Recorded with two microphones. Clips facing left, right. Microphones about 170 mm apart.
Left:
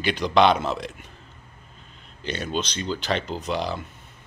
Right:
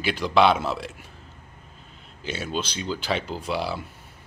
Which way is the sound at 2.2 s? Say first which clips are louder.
Left 1 dB; 5° right (ahead or behind).